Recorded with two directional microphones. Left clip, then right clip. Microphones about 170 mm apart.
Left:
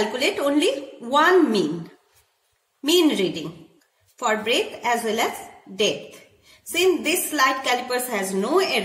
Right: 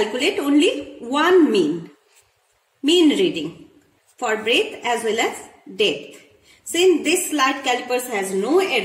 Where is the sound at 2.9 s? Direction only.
25° right (ahead or behind).